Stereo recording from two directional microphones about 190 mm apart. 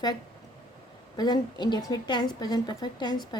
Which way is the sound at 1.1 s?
20° left (ahead or behind).